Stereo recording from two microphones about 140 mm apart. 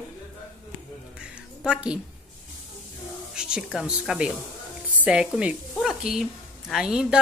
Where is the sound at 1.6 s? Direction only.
5° right (ahead or behind).